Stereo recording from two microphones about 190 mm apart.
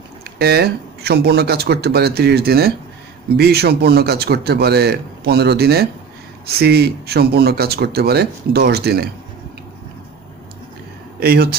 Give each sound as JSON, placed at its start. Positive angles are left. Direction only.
{"t": 0.2, "sound": "speech", "side_deg": -55}
{"t": 11.1, "sound": "speech", "side_deg": -55}